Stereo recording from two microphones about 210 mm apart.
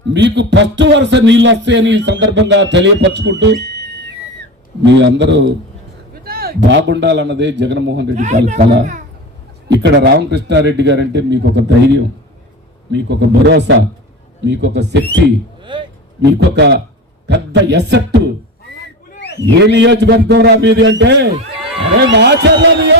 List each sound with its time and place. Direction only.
0.1 s a man's voice: 55° right (ahead or behind)
6.2 s a man's voice: 45° right (ahead or behind)
8.1 s a man's voice: 35° right (ahead or behind)
9.7 s a man's voice: 55° right (ahead or behind)
15.7 s speech: 25° right (ahead or behind)
16.2 s a man's voice: 55° right (ahead or behind)
19.5 s a man's voice: 55° right (ahead or behind)